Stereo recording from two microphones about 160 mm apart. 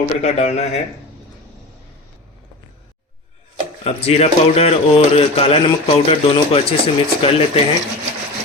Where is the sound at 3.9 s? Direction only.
40° left (ahead or behind).